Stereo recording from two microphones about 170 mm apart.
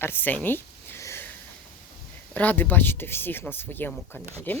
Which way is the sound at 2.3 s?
10° left (ahead or behind).